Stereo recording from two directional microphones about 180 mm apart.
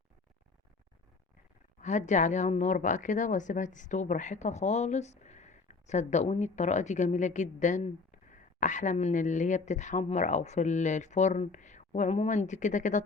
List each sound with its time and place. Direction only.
1.8 s speech: 40° left (ahead or behind)